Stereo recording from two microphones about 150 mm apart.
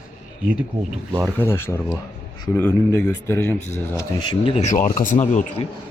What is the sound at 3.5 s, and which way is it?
Speech, 50° left (ahead or behind).